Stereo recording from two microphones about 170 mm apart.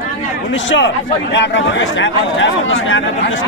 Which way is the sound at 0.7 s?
90° left.